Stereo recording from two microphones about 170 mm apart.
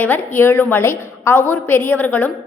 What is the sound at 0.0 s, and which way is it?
A woman's voice, 10° left (ahead or behind).